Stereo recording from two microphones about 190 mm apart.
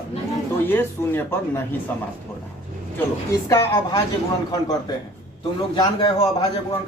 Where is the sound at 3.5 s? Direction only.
15° left (ahead or behind).